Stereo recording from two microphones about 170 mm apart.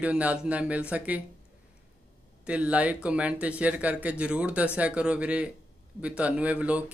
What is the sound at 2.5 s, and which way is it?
Speech, 5° right (ahead or behind).